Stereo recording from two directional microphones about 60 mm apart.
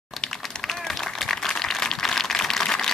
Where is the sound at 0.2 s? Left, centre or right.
Centre.